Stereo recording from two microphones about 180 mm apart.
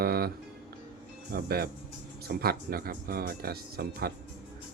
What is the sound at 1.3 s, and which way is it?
Speech, 60° right (ahead or behind).